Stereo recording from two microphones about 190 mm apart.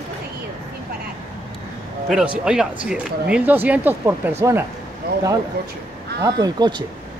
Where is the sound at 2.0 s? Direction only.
5° right (ahead or behind).